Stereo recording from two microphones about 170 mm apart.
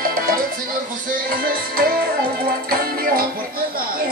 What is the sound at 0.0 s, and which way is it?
Music, 60° right (ahead or behind).